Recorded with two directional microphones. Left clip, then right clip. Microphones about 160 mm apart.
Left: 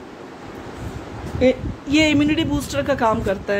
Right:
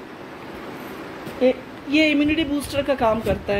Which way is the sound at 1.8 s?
15° left (ahead or behind).